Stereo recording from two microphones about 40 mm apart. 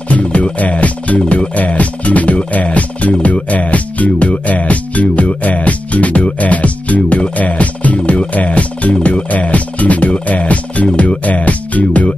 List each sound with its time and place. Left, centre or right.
0.1 s music: left